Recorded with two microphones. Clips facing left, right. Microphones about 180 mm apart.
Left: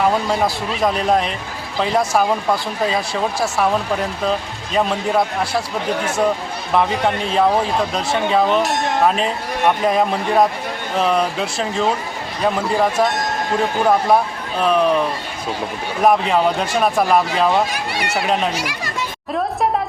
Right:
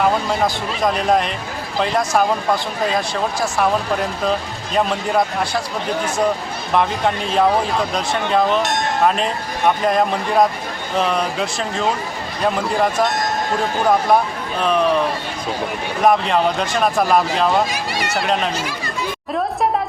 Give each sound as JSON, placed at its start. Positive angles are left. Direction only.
{"t": 0.0, "sound": "speech", "side_deg": 0}
{"t": 6.7, "sound": "speech", "side_deg": 0}
{"t": 18.5, "sound": "speech", "side_deg": 80}